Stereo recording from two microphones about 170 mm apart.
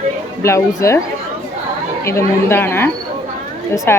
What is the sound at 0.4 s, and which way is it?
Speech, 15° left (ahead or behind).